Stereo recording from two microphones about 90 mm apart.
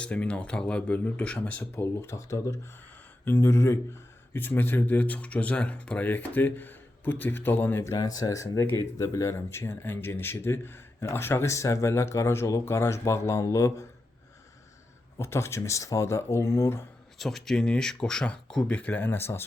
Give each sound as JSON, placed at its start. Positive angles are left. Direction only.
{"t": 0.0, "sound": "speech", "side_deg": 15}
{"t": 1.7, "sound": "speech", "side_deg": 30}
{"t": 7.9, "sound": "speech", "side_deg": 45}
{"t": 15.2, "sound": "speech", "side_deg": 30}
{"t": 17.2, "sound": "speech", "side_deg": 5}